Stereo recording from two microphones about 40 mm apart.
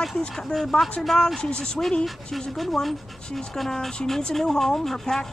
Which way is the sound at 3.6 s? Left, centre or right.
Centre.